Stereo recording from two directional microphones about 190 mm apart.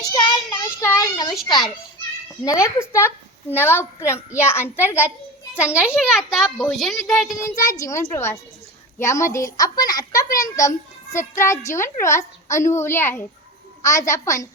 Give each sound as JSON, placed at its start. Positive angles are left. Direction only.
{"t": 0.1, "sound": "child singing", "side_deg": 20}
{"t": 1.5, "sound": "a child's voice", "side_deg": 25}
{"t": 6.1, "sound": "a child's voice", "side_deg": 0}
{"t": 7.6, "sound": "a woman's voice", "side_deg": 15}